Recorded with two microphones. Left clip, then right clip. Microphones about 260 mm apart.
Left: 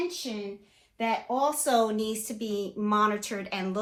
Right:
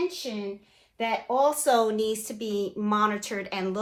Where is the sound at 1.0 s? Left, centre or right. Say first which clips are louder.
Right 3 dB; right.